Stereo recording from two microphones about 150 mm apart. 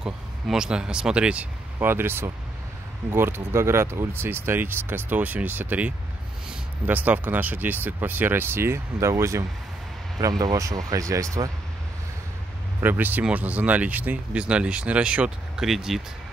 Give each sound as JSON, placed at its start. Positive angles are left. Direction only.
{"t": 0.0, "sound": "speech", "side_deg": -5}
{"t": 12.8, "sound": "speech", "side_deg": -10}